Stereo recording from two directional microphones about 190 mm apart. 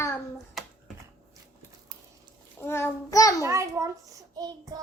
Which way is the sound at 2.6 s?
10° left (ahead or behind).